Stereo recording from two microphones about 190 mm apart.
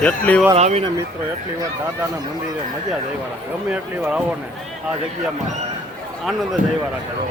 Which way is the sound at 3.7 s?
5° right (ahead or behind).